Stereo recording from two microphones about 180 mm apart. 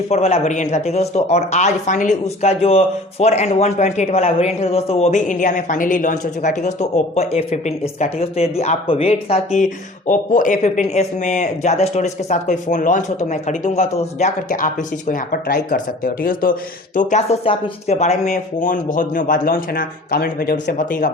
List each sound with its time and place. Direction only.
0.1 s speech: 35° left (ahead or behind)